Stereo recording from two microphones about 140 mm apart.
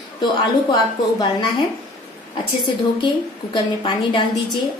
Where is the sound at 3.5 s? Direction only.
35° left (ahead or behind).